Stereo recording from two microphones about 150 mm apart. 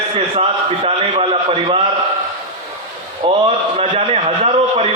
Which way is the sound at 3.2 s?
35° right (ahead or behind).